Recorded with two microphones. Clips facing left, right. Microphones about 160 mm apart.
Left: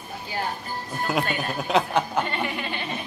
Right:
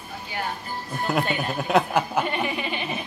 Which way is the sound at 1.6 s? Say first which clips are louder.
Right 1 dB; 5° right (ahead or behind).